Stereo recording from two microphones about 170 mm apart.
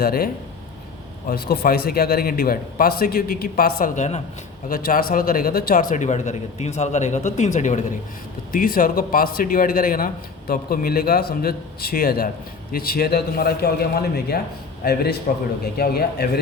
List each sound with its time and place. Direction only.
0.0 s speech: 60° left (ahead or behind)
1.3 s speech: 60° left (ahead or behind); by 4.2 s 45° left (ahead or behind)
4.7 s speech: 55° left (ahead or behind)
5.9 s speech: 45° left (ahead or behind)
8.5 s speech: 55° left (ahead or behind)
15.3 s speech: 55° left (ahead or behind)
15.6 s speech: 65° left (ahead or behind)